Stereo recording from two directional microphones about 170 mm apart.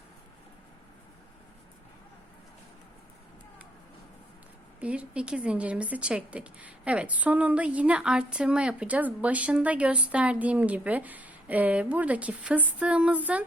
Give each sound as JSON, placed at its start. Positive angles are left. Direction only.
{"t": 4.8, "sound": "speech", "side_deg": -5}